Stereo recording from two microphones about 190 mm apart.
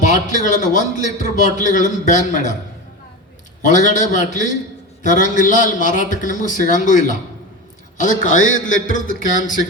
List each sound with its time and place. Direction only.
0.0 s a man's voice: 40° left (ahead or behind)
3.6 s a man's voice: 40° left (ahead or behind)